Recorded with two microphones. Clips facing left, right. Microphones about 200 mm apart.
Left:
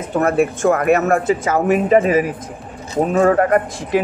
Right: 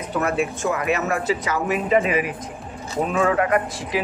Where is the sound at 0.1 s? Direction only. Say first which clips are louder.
Left 7 dB; 50° left (ahead or behind).